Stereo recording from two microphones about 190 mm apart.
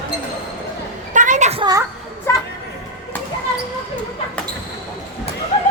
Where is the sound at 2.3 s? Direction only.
15° left (ahead or behind).